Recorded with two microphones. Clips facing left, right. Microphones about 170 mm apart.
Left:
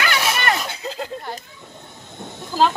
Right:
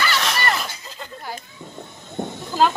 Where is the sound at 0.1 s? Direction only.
5° left (ahead or behind).